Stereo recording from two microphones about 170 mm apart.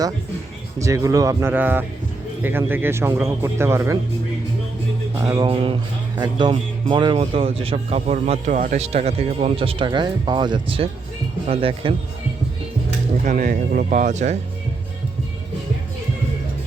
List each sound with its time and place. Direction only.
0.8 s a man's voice: 20° right (ahead or behind)
5.1 s speech: 20° right (ahead or behind)
13.2 s speech: 50° right (ahead or behind)